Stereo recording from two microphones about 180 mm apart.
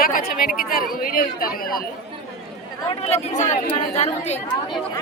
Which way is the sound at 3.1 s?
40° left (ahead or behind).